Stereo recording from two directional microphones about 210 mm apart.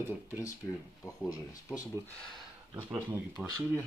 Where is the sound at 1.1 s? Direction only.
15° left (ahead or behind).